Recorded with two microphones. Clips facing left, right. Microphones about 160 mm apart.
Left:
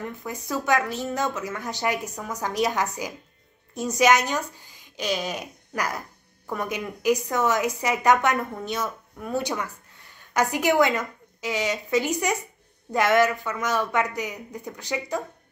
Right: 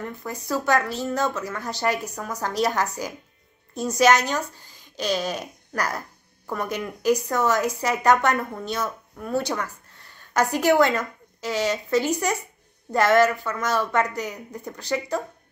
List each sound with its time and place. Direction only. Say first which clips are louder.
0.0 s a woman's voice: right 1 dB; 20° left (ahead or behind)